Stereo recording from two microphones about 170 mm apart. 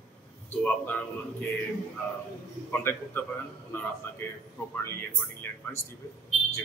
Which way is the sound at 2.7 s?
15° left (ahead or behind).